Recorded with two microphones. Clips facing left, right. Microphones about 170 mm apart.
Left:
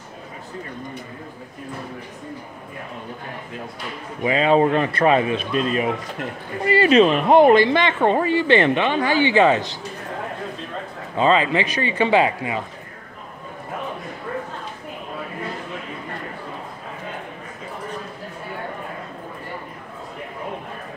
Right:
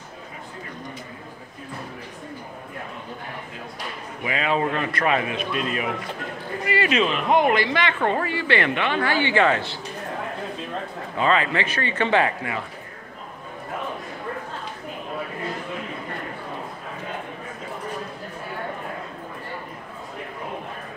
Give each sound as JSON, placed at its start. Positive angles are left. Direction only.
{"t": 4.2, "sound": "a man's voice", "side_deg": 30}
{"t": 11.1, "sound": "a man's voice", "side_deg": 20}